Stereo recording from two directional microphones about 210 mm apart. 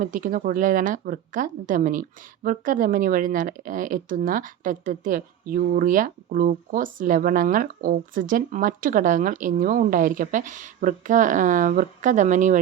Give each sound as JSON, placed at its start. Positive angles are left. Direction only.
{"t": 0.0, "sound": "speech", "side_deg": -40}